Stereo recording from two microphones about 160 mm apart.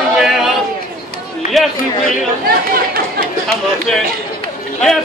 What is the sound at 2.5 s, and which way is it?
Chatter, 70° right (ahead or behind).